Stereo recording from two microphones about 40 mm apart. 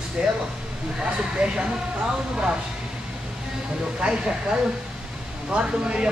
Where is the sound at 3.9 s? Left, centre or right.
Right.